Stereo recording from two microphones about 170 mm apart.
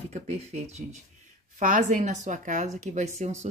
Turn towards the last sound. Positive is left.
turn(degrees=-45)  # may be behind; listen again after turning